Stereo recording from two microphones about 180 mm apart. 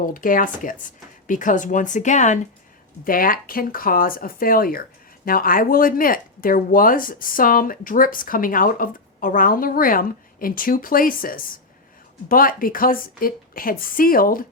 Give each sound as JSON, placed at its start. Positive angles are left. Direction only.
{"t": 0.0, "sound": "speech", "side_deg": 50}